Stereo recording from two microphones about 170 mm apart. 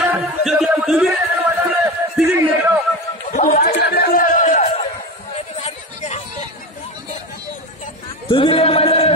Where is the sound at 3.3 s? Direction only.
50° left (ahead or behind).